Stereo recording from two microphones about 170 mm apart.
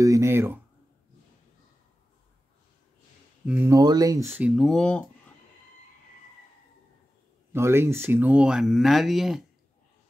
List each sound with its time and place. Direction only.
0.0 s speech: 15° right (ahead or behind)
3.4 s speech: 15° right (ahead or behind)
4.4 s speech: 5° right (ahead or behind)
7.5 s speech: 15° right (ahead or behind)